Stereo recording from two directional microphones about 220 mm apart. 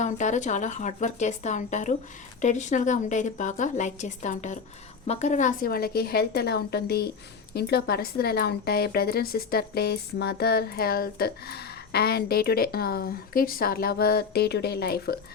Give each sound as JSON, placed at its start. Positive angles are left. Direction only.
{"t": 0.0, "sound": "a woman's voice", "side_deg": 35}